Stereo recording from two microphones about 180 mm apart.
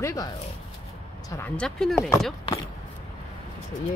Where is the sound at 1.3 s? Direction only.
10° left (ahead or behind).